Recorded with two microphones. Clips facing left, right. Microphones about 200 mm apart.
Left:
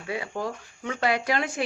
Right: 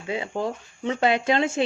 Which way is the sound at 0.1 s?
25° right (ahead or behind).